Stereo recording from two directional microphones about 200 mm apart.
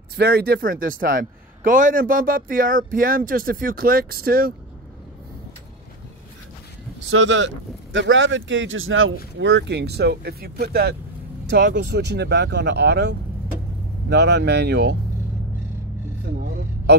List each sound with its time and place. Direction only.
0.1 s a man's voice: 50° right (ahead or behind)
7.1 s speech: 70° right (ahead or behind)